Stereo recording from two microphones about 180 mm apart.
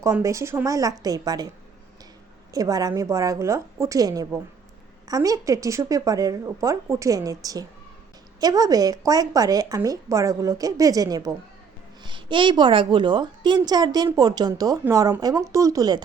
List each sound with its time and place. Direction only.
0.0 s a woman's voice: 15° right (ahead or behind)
2.5 s a woman's voice: 20° right (ahead or behind)